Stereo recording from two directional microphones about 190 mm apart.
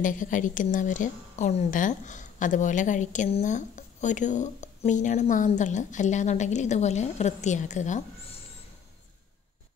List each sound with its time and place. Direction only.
0.0 s a woman's voice: 45° left (ahead or behind)